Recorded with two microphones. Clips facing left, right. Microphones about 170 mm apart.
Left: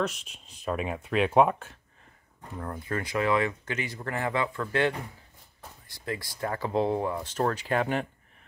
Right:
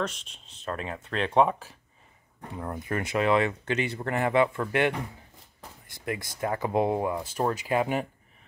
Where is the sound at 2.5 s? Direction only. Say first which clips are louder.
Right 1 dB; 20° right (ahead or behind).